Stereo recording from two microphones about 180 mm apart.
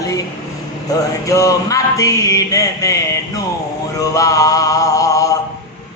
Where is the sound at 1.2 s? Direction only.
20° left (ahead or behind).